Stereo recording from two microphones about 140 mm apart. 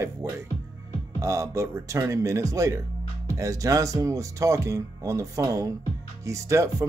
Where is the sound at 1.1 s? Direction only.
20° right (ahead or behind).